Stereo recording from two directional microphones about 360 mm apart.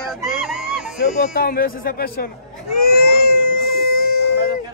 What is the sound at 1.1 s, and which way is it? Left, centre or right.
A man's voice, left.